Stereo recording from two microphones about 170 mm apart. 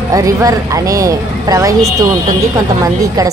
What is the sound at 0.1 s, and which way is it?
Speech, 20° right (ahead or behind).